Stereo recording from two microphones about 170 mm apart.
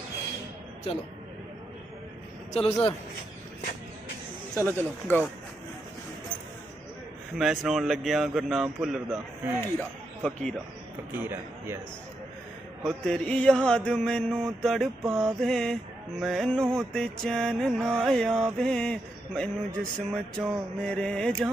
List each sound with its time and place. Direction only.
0.9 s a man's voice: 35° left (ahead or behind)
2.5 s a man's voice: 35° left (ahead or behind)
4.6 s speech: 10° left (ahead or behind)
7.3 s mantra: centre (ahead or behind)
11.1 s speech: 10° right (ahead or behind)
12.8 s mantra: 5° left (ahead or behind)
15.0 s speech: 15° right (ahead or behind)
15.4 s mantra: 5° left (ahead or behind)